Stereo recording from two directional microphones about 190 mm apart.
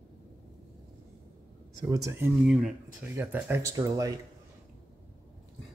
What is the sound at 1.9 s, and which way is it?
Speech, 15° right (ahead or behind).